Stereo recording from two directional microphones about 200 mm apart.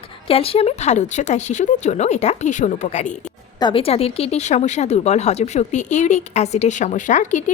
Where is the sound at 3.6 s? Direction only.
25° left (ahead or behind).